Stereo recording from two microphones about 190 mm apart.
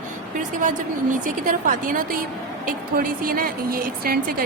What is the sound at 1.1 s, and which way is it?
A woman's voice, 45° right (ahead or behind).